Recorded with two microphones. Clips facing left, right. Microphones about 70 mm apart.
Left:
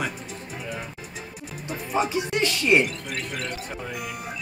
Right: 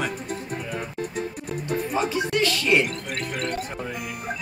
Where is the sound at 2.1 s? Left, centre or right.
Left.